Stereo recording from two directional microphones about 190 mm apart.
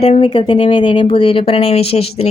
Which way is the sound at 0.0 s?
30° left (ahead or behind).